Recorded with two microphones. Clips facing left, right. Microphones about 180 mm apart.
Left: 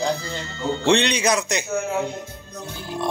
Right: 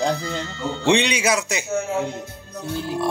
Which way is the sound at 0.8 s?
15° right (ahead or behind).